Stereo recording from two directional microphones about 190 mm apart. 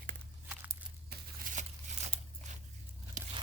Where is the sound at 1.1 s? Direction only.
50° right (ahead or behind).